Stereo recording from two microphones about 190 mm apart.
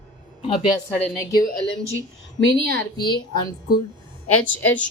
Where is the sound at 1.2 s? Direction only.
20° left (ahead or behind).